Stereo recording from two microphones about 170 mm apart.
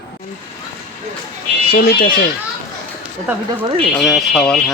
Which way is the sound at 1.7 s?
65° left (ahead or behind).